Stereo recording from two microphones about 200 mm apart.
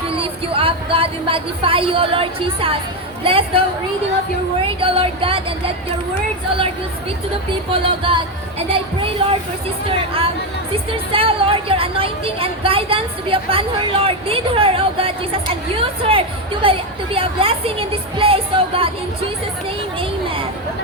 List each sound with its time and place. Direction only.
0.1 s a woman's voice: 25° right (ahead or behind)
4.6 s a woman's voice: 25° right (ahead or behind)
7.7 s a woman's voice: 25° right (ahead or behind)
9.2 s a woman's voice: 25° right (ahead or behind)
20.0 s a woman's voice: 25° right (ahead or behind)